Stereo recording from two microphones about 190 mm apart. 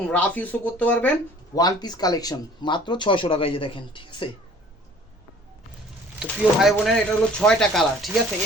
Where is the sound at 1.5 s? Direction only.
20° left (ahead or behind).